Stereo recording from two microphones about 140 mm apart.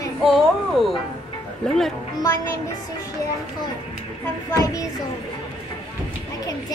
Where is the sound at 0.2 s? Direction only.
Centre (ahead or behind).